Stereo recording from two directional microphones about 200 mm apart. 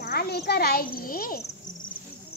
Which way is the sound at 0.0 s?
50° left (ahead or behind).